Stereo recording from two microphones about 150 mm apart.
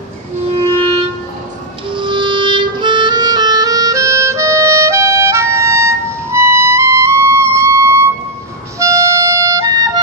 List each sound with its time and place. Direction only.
1.9 s music: 35° right (ahead or behind)